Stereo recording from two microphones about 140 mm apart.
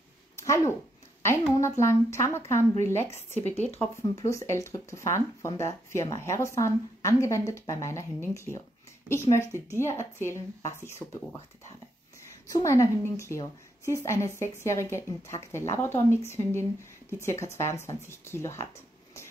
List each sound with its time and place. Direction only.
1.6 s speech: 20° left (ahead or behind)
12.4 s speech: 25° left (ahead or behind)